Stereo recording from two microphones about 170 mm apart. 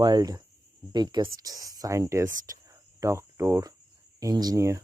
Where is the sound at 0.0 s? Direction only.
25° right (ahead or behind).